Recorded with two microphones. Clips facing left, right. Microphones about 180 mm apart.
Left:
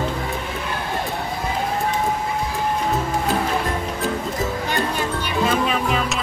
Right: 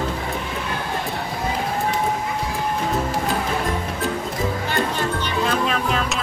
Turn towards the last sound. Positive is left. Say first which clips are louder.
# left 1 dB
turn(degrees=0)  # may be behind; listen again after turning